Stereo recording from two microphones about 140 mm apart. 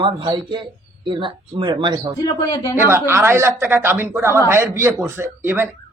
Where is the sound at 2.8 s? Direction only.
20° right (ahead or behind).